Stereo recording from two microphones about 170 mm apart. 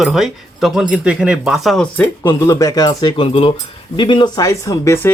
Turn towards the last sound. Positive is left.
turn(degrees=20)  # may be behind; listen again after turning